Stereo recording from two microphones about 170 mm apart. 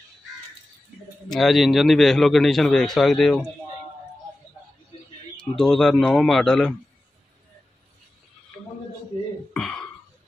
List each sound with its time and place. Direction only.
1.3 s a man's voice: centre (ahead or behind)
5.4 s a man's voice: 5° left (ahead or behind)
9.5 s a sound: 5° left (ahead or behind)